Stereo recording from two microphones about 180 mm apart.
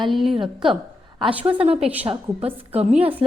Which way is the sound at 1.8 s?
10° right (ahead or behind).